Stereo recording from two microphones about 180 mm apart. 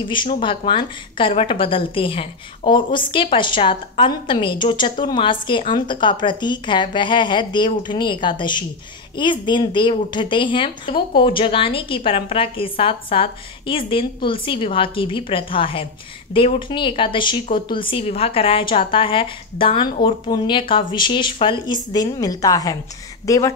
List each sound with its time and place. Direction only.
0.4 s a woman's voice: 30° left (ahead or behind)